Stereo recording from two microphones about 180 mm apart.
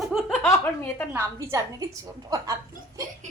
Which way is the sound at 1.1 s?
15° right (ahead or behind).